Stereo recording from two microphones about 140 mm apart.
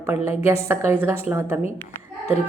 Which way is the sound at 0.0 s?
20° right (ahead or behind).